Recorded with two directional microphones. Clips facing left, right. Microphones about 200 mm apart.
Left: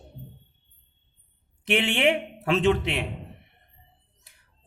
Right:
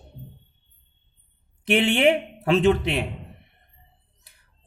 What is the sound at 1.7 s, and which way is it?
A man's voice, 35° right (ahead or behind).